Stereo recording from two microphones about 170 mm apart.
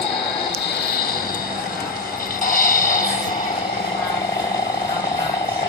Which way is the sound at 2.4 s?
55° left (ahead or behind).